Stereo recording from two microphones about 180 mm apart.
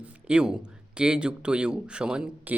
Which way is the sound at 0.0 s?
5° right (ahead or behind).